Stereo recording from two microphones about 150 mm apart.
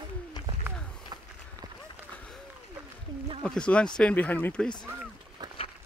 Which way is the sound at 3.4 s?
5° left (ahead or behind).